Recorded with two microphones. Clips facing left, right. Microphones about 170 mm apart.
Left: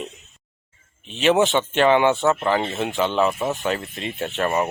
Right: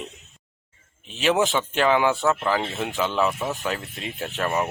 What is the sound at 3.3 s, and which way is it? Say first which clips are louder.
Speech: left 4 dB; 20° left (ahead or behind).